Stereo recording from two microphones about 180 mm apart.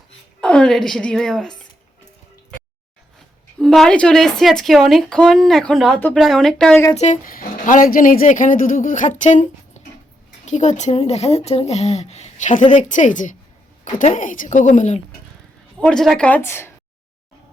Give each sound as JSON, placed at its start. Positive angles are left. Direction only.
{"t": 0.4, "sound": "a woman's voice", "side_deg": 5}
{"t": 3.6, "sound": "a woman's voice", "side_deg": 5}
{"t": 6.9, "sound": "speech", "side_deg": 40}
{"t": 15.8, "sound": "speech", "side_deg": 5}